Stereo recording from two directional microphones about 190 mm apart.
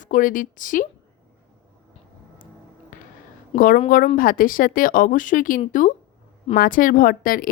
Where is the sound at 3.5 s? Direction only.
45° left (ahead or behind).